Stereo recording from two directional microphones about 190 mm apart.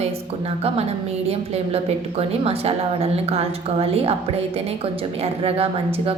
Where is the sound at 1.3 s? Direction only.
30° right (ahead or behind).